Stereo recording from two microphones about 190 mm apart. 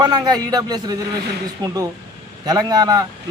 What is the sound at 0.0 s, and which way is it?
Speech, 20° right (ahead or behind).